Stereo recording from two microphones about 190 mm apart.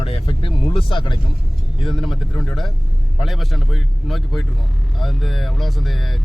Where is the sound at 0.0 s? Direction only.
30° left (ahead or behind).